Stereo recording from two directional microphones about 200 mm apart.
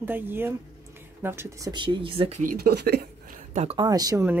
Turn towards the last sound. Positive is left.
turn(degrees=-15)  # may be behind; listen again after turning